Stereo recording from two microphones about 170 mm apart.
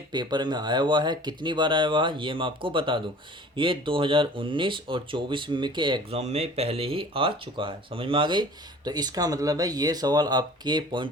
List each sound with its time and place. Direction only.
0.1 s speech: 25° right (ahead or behind)